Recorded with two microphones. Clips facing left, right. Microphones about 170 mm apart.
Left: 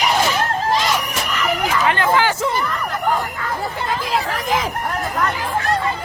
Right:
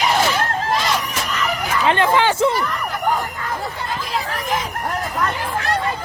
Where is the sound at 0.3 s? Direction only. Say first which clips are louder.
Left 1 dB; 10° left (ahead or behind).